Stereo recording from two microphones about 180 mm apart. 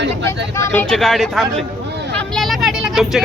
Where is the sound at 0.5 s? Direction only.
15° left (ahead or behind).